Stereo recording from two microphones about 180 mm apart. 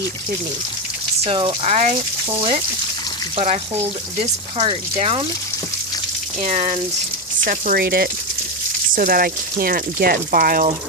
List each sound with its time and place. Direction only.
1.2 s speech: 30° right (ahead or behind)
3.3 s speech: 35° right (ahead or behind)
6.4 s speech: 40° right (ahead or behind)